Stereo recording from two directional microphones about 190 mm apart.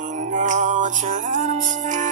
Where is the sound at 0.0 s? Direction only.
40° right (ahead or behind).